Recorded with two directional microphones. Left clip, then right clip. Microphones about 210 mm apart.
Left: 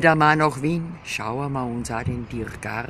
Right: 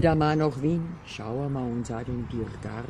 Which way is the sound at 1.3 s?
25° left (ahead or behind).